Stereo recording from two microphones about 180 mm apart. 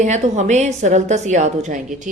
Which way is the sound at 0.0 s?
40° right (ahead or behind).